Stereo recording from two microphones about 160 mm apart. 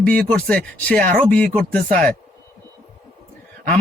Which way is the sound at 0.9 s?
60° right (ahead or behind).